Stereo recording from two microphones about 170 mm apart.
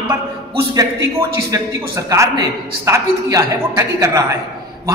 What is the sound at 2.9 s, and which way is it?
A man's voice, 20° right (ahead or behind).